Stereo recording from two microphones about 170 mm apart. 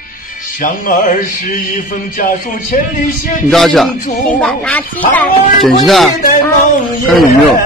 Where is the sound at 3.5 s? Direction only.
Centre (ahead or behind).